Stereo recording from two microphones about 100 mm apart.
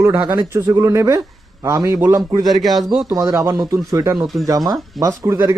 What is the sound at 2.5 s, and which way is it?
Speech, centre (ahead or behind).